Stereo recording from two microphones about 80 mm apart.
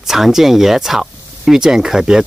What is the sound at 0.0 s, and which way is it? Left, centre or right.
Speech, centre.